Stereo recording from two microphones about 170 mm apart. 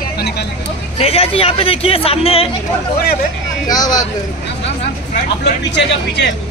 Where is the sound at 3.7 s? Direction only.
20° left (ahead or behind).